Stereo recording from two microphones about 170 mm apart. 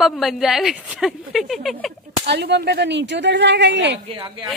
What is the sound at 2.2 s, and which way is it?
Speech, 80° right.